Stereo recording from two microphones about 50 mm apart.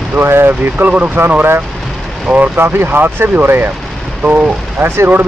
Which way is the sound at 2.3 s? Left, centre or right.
Right.